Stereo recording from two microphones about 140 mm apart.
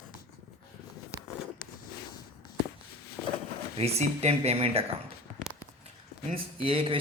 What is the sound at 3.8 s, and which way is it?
Speech, 50° right (ahead or behind).